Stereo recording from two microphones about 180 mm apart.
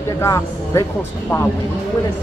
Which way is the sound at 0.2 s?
20° left (ahead or behind).